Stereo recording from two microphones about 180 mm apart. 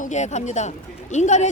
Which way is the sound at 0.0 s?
40° left (ahead or behind).